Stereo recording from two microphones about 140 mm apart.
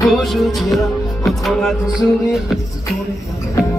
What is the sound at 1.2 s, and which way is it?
Speech, centre (ahead or behind).